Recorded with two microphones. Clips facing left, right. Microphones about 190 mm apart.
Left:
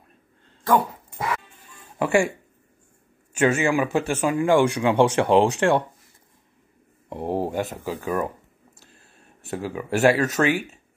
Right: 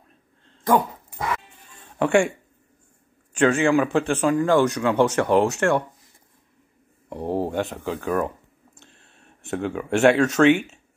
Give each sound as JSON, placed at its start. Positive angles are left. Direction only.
{"t": 2.0, "sound": "speech", "side_deg": 5}
{"t": 3.3, "sound": "speech", "side_deg": 5}
{"t": 7.1, "sound": "a sound", "side_deg": 15}
{"t": 7.6, "sound": "speech", "side_deg": 5}
{"t": 9.4, "sound": "speech", "side_deg": 0}